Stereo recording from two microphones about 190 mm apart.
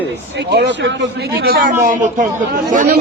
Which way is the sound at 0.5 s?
65° right (ahead or behind).